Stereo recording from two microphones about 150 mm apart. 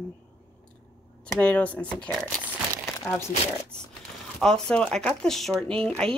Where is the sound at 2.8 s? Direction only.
15° left (ahead or behind).